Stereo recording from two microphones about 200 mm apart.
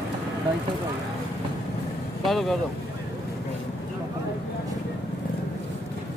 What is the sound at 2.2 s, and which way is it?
Speech, centre (ahead or behind).